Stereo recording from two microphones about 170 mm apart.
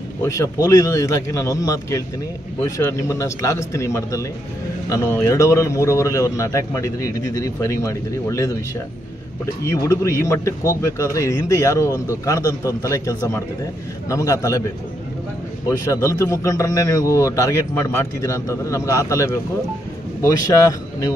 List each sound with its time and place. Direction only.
0.2 s a man's voice: 20° left (ahead or behind)
9.7 s a man's voice: 15° left (ahead or behind)
15.7 s a man's voice: 20° left (ahead or behind)